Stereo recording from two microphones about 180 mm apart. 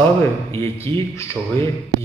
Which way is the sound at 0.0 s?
15° left (ahead or behind).